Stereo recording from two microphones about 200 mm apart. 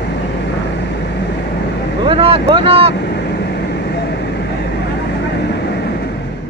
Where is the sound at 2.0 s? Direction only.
30° right (ahead or behind).